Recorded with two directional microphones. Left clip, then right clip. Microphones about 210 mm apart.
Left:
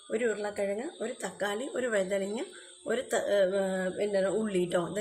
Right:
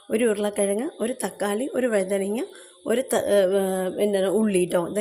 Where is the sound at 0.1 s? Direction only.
35° right (ahead or behind).